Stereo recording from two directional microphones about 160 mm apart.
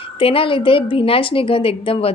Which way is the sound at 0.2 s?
35° left (ahead or behind).